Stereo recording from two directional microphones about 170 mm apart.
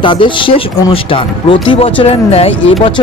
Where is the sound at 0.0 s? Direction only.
30° left (ahead or behind).